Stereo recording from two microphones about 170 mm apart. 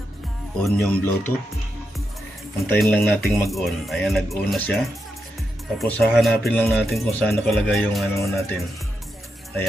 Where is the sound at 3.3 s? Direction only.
Centre (ahead or behind).